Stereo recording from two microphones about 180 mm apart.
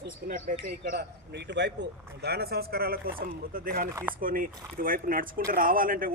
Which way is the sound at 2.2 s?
65° right (ahead or behind).